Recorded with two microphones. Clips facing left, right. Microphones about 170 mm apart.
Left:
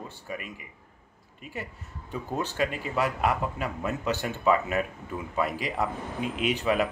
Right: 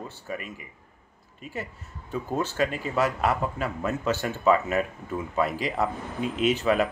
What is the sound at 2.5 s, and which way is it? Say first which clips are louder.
Speech: right 1 dB; 40° right (ahead or behind).